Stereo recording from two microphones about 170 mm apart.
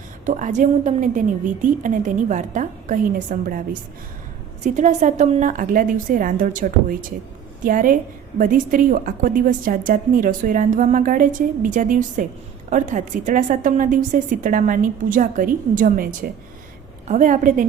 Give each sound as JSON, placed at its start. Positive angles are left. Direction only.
{"t": 0.3, "sound": "a woman's voice", "side_deg": -50}